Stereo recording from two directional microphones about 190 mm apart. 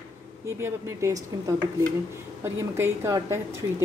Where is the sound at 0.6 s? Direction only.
15° right (ahead or behind).